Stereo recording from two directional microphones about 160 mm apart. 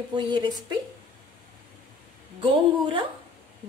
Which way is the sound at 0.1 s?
30° right (ahead or behind).